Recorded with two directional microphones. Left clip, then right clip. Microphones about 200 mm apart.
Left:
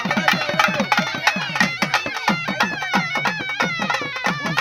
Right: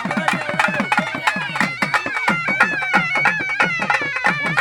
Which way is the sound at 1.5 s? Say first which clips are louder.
Even; 55° left (ahead or behind).